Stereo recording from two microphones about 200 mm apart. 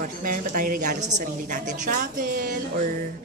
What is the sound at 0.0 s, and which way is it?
A woman's voice, 45° right (ahead or behind).